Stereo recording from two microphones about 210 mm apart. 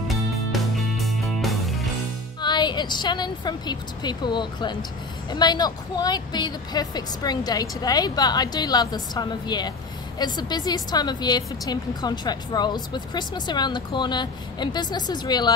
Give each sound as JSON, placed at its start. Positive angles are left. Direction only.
{"t": 0.1, "sound": "music", "side_deg": 0}
{"t": 2.4, "sound": "a woman's voice", "side_deg": 20}